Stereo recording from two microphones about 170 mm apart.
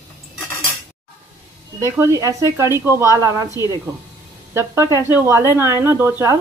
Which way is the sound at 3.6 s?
20° left (ahead or behind).